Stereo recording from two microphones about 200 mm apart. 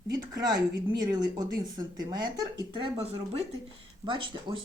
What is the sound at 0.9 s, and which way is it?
Speech, 20° right (ahead or behind).